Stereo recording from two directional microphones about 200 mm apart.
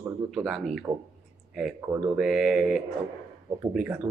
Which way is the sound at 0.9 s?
20° right (ahead or behind).